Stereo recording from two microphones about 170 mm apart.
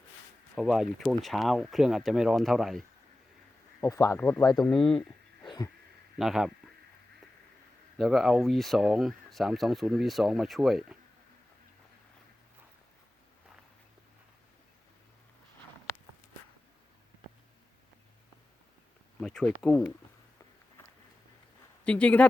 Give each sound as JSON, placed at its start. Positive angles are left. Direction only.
{"t": 0.5, "sound": "speech", "side_deg": 0}
{"t": 3.8, "sound": "speech", "side_deg": 20}
{"t": 4.5, "sound": "speech", "side_deg": 0}
{"t": 5.4, "sound": "a sound", "side_deg": 25}
{"t": 6.1, "sound": "speech", "side_deg": 0}
{"t": 7.9, "sound": "speech", "side_deg": 0}
{"t": 19.2, "sound": "speech", "side_deg": 5}
{"t": 21.8, "sound": "speech", "side_deg": 5}